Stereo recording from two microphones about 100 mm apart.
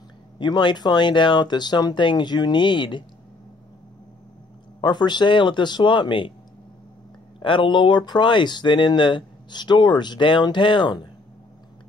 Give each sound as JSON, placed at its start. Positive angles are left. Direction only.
{"t": 0.4, "sound": "speech", "side_deg": 50}
{"t": 4.8, "sound": "speech", "side_deg": 45}
{"t": 7.3, "sound": "speech", "side_deg": 55}